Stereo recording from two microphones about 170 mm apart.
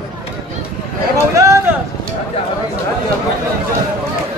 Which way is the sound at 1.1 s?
20° right (ahead or behind).